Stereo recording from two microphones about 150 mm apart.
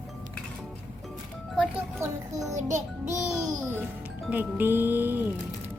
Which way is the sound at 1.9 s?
20° right (ahead or behind).